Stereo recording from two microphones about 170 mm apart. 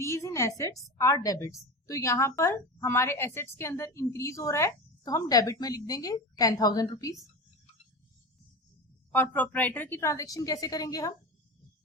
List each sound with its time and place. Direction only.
0.0 s a sound: 15° left (ahead or behind)
0.9 s a woman's voice: 20° left (ahead or behind)
9.1 s a woman's voice: 10° left (ahead or behind)